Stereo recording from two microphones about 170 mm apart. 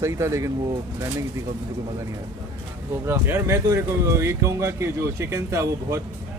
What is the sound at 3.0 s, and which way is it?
Speech, 15° right (ahead or behind).